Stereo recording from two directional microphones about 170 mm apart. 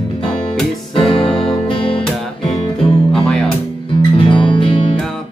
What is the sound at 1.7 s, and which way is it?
Music, 30° left (ahead or behind).